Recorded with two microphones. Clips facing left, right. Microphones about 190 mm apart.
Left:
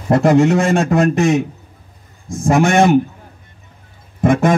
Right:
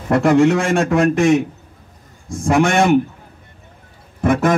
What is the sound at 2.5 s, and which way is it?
Speech, 40° left (ahead or behind).